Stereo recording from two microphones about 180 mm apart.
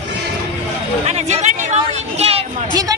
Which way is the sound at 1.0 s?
35° right (ahead or behind).